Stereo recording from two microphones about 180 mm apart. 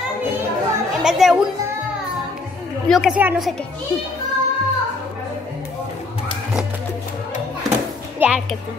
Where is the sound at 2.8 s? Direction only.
5° right (ahead or behind).